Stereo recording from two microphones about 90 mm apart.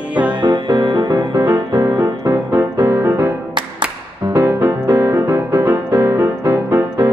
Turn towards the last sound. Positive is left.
turn(degrees=-35)  # may be behind; listen again after turning